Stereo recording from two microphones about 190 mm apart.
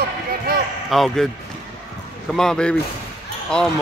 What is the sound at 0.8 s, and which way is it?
Speech, centre (ahead or behind).